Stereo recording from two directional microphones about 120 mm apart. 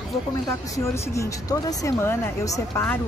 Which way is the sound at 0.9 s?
25° left (ahead or behind).